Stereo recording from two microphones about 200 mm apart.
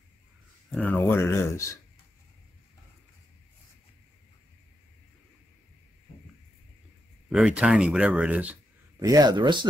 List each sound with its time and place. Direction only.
0.7 s speech: 5° left (ahead or behind)
7.2 s speech: 5° right (ahead or behind)
9.0 s speech: 20° right (ahead or behind)